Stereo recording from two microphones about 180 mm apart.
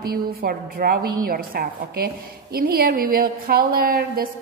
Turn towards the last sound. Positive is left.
turn(degrees=-55)  # may be behind; listen again after turning